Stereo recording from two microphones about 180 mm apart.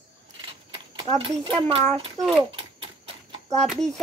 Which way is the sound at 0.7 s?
25° right (ahead or behind).